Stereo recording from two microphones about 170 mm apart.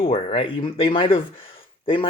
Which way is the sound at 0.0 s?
35° left (ahead or behind).